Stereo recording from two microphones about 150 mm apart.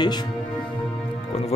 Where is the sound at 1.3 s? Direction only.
40° left (ahead or behind).